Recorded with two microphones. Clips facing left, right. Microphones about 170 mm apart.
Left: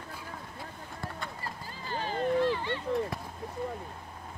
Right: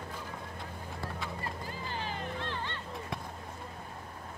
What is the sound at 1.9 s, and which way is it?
Vehicle, 40° left (ahead or behind).